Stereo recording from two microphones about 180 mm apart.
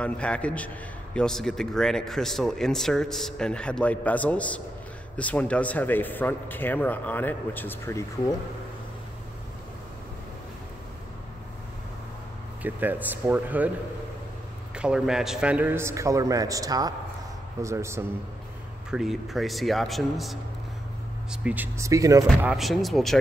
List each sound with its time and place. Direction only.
0.0 s speech: 5° left (ahead or behind)
12.6 s a man's voice: 10° right (ahead or behind)
14.8 s a man's voice: 5° right (ahead or behind)
18.9 s a man's voice: centre (ahead or behind); by 22.5 s 20° right (ahead or behind)
22.5 s speech: centre (ahead or behind)